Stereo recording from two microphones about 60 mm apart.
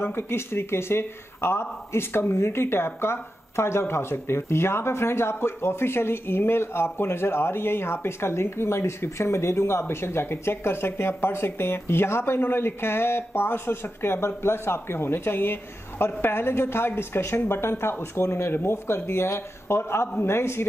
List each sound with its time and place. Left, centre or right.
0.0 s speech: left